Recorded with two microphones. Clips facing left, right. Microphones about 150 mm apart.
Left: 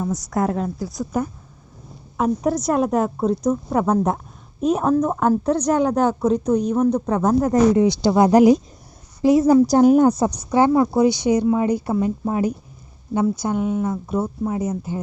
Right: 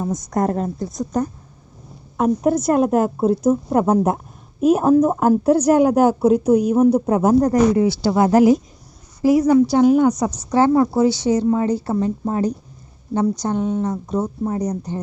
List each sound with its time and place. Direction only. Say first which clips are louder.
0.0 s speech: right 1 dB; 20° right (ahead or behind)
0.3 s a woman's voice: right 2 dB; centre (ahead or behind)
7.5 s a woman's voice: even; 20° left (ahead or behind)
9.6 s a woman's voice: left 1 dB; 45° left (ahead or behind)
10.2 s a woman's voice: right 1 dB; 15° left (ahead or behind)